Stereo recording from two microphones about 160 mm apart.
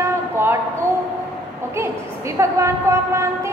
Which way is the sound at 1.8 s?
20° right (ahead or behind).